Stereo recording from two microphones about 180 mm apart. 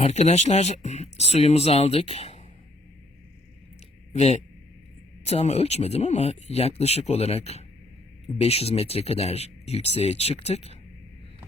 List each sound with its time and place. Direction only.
0.0 s speech: 40° left (ahead or behind)
4.1 s speech: 40° left (ahead or behind)